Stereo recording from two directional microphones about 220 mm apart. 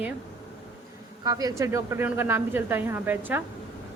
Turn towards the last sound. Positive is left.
turn(degrees=-10)  # may be behind; listen again after turning